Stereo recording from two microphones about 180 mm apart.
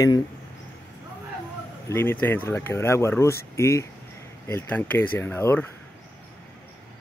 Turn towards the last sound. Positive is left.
turn(degrees=10)  # may be behind; listen again after turning